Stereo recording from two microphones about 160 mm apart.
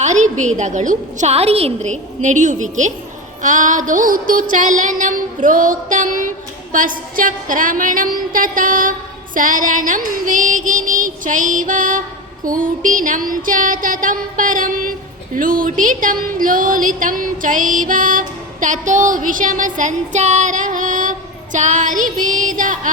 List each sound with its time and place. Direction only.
0.0 s a woman's voice: 50° right (ahead or behind)
3.4 s music: 50° right (ahead or behind)
4.5 s a woman's voice: 50° right (ahead or behind)
6.7 s music: 55° right (ahead or behind)